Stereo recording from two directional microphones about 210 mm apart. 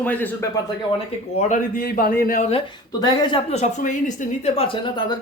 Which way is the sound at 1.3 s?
40° left (ahead or behind).